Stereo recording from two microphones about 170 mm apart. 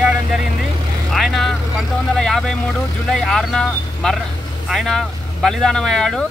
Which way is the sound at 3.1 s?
Centre (ahead or behind).